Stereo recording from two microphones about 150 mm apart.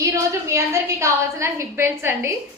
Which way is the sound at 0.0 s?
20° right (ahead or behind).